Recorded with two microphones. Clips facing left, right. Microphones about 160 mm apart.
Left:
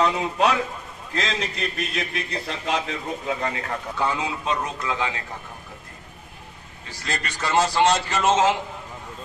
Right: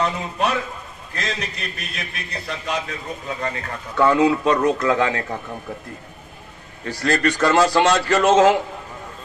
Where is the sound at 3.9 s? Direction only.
65° right (ahead or behind).